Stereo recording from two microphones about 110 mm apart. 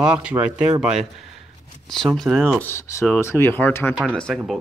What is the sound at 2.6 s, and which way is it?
Speech, 25° left (ahead or behind).